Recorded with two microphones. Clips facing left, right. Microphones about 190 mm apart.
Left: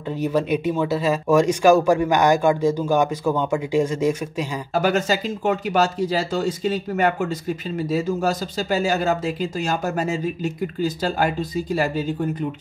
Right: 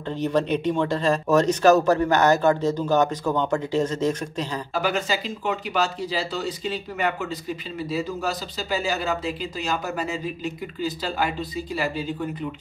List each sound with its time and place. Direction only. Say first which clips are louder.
0.1 s speech: left 2 dB; 10° left (ahead or behind)
4.7 s speech: left 5 dB; 45° left (ahead or behind)